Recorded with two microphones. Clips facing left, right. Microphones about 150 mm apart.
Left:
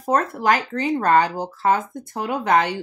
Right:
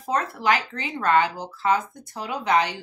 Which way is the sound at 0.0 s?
50° left (ahead or behind).